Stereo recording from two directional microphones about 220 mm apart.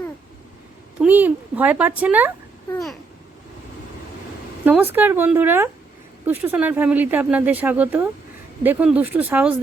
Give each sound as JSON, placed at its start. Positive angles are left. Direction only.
{"t": 0.9, "sound": "speech", "side_deg": -5}
{"t": 4.6, "sound": "speech", "side_deg": -10}